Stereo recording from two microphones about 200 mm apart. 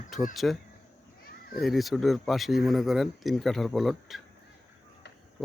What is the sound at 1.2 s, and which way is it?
Children playing, 50° left (ahead or behind).